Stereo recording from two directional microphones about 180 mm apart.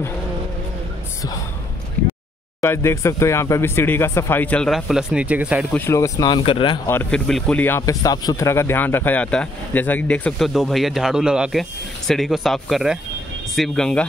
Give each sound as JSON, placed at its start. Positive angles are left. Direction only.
{"t": 2.6, "sound": "speech", "side_deg": 15}
{"t": 5.7, "sound": "speech", "side_deg": 10}
{"t": 6.9, "sound": "speech", "side_deg": 10}